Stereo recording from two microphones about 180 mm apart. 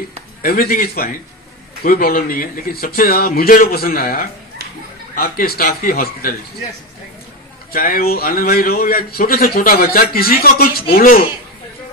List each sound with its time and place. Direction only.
0.4 s a man's voice: 55° left (ahead or behind)
7.7 s a man's voice: 55° left (ahead or behind)